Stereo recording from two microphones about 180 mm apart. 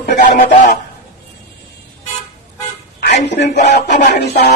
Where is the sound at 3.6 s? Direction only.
40° left (ahead or behind).